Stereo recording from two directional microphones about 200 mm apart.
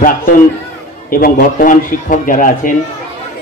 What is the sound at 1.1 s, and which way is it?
A man's voice, 45° left (ahead or behind).